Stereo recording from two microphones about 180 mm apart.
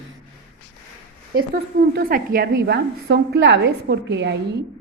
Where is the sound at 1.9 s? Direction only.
55° right (ahead or behind); by 4.4 s 75° right (ahead or behind).